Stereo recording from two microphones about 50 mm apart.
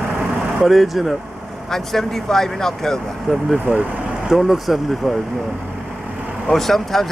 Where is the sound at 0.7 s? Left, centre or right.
Centre.